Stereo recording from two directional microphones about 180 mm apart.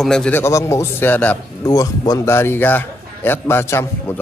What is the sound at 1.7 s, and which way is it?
A man's voice, 20° left (ahead or behind).